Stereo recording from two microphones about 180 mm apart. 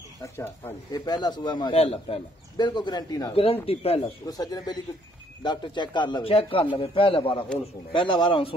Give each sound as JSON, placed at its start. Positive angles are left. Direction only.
{"t": 0.2, "sound": "speech", "side_deg": 15}
{"t": 3.6, "sound": "speech", "side_deg": 35}
{"t": 4.3, "sound": "speech", "side_deg": 20}